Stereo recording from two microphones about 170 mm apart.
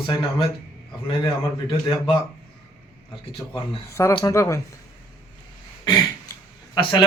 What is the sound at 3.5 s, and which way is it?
Speech, 15° left (ahead or behind).